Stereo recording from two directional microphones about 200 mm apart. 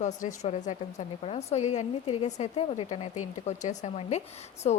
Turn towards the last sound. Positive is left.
turn(degrees=35)  # may be behind; listen again after turning